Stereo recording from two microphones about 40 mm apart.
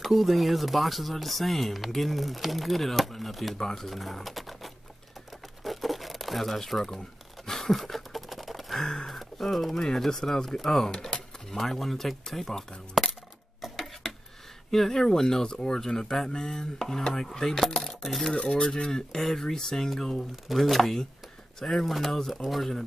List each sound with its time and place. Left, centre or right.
0.0 s speech: centre
3.5 s speech: centre
5.6 s crumpling: centre
7.4 s a sound: centre
8.8 s a sound: centre
9.8 s speech: centre
11.5 s speech: centre
14.7 s speech: centre
18.3 s speech: left
20.4 s speech: centre